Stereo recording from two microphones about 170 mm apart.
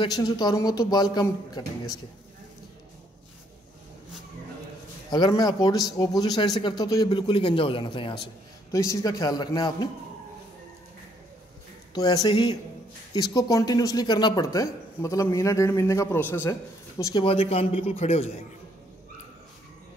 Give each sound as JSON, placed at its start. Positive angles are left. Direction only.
{"t": 0.0, "sound": "speech", "side_deg": 25}
{"t": 5.1, "sound": "speech", "side_deg": 25}
{"t": 11.9, "sound": "speech", "side_deg": 25}
{"t": 17.0, "sound": "speech", "side_deg": 30}